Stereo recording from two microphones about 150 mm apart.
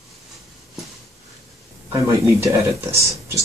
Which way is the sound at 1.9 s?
20° right (ahead or behind).